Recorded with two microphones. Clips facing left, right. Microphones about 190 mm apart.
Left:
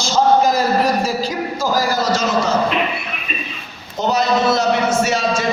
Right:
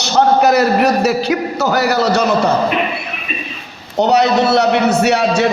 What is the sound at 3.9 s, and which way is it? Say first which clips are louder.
A man's voice: right 5 dB; 70° right (ahead or behind).